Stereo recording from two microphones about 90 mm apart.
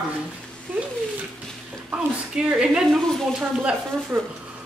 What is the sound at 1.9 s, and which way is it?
A woman's voice, 10° right (ahead or behind).